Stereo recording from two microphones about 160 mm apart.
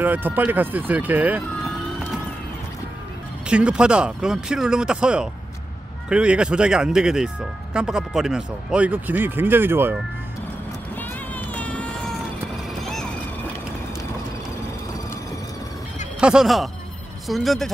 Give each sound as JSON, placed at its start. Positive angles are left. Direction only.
{"t": 0.0, "sound": "speech", "side_deg": -10}
{"t": 3.4, "sound": "speech", "side_deg": -5}
{"t": 11.0, "sound": "run", "side_deg": 10}
{"t": 12.8, "sound": "music", "side_deg": 5}
{"t": 16.2, "sound": "speech", "side_deg": -5}